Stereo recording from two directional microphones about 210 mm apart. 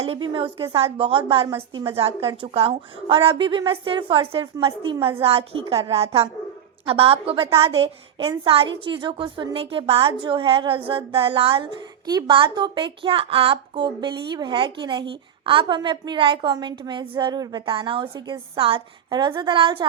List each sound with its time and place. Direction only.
0.0 s a woman's voice: 25° right (ahead or behind)